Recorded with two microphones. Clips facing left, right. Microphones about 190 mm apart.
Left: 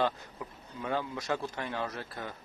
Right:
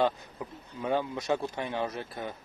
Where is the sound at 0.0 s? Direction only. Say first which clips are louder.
Right 3 dB; 20° right (ahead or behind).